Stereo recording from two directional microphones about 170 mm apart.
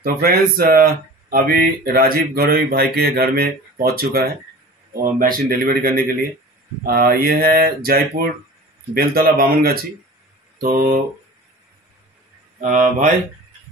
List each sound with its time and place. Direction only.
0.0 s speech: 60° right (ahead or behind)
12.5 s speech: 50° right (ahead or behind)